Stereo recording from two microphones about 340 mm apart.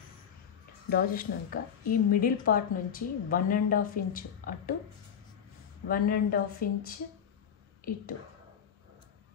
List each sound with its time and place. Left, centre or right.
0.8 s speech: left
5.9 s speech: left